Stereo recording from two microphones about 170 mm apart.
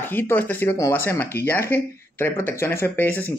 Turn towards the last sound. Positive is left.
turn(degrees=10)  # may be behind; listen again after turning